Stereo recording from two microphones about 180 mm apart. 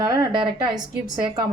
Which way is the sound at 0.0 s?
20° right (ahead or behind).